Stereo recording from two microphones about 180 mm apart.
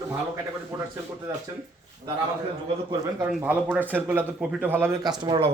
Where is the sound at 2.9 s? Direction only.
15° right (ahead or behind).